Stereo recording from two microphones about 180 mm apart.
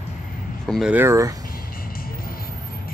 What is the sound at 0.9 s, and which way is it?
Speech, 15° right (ahead or behind).